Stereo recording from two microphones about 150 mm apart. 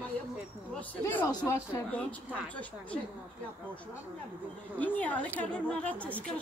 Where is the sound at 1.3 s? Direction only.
20° left (ahead or behind).